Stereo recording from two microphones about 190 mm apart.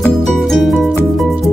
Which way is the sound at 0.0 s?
Centre (ahead or behind).